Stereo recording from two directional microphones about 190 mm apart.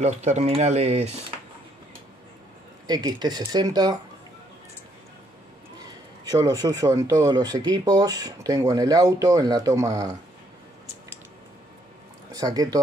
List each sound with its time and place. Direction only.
0.0 s speech: 35° right (ahead or behind)
2.9 s a man's voice: 20° right (ahead or behind)
5.8 s a man's voice: 20° right (ahead or behind)
12.3 s speech: 20° right (ahead or behind)